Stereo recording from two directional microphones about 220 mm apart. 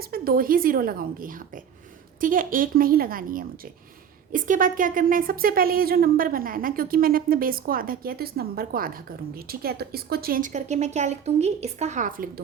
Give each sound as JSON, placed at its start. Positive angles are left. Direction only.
{"t": 0.0, "sound": "speech", "side_deg": -40}